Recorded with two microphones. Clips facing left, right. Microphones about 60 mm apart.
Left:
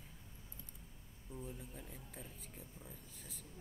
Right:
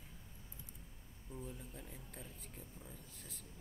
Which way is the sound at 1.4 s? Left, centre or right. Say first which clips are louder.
Even; centre.